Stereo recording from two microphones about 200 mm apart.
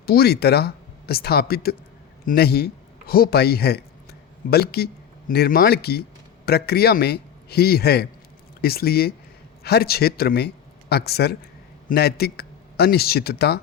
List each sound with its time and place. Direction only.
0.0 s a man's voice: 50° left (ahead or behind)